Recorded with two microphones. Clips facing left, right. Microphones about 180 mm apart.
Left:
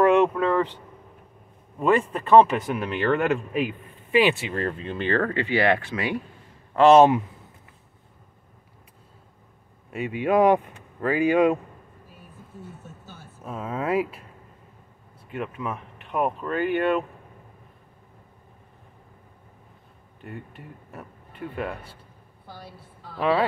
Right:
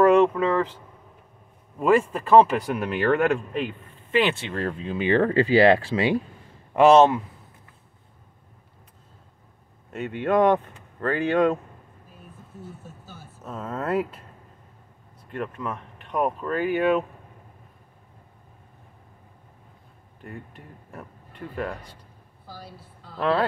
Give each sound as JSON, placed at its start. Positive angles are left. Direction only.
{"t": 0.0, "sound": "vehicle", "side_deg": 0}
{"t": 1.8, "sound": "speech", "side_deg": -5}
{"t": 5.0, "sound": "speech", "side_deg": -20}
{"t": 5.3, "sound": "speech", "side_deg": -35}
{"t": 9.9, "sound": "speech", "side_deg": 10}
{"t": 13.4, "sound": "speech", "side_deg": 10}
{"t": 15.2, "sound": "speech", "side_deg": 5}
{"t": 20.2, "sound": "speech", "side_deg": 0}
{"t": 23.1, "sound": "speech", "side_deg": 5}